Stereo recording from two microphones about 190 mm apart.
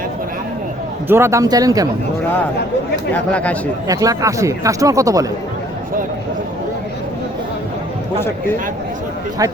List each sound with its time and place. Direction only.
1.0 s speech: 15° right (ahead or behind)
3.1 s speech: 5° left (ahead or behind)
3.8 s speech: 20° right (ahead or behind)